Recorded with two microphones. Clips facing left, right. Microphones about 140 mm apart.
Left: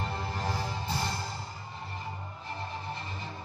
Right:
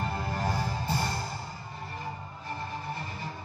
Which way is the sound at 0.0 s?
50° right (ahead or behind).